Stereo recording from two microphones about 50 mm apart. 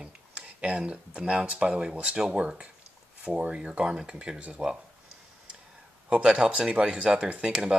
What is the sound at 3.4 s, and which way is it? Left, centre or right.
Speech, centre.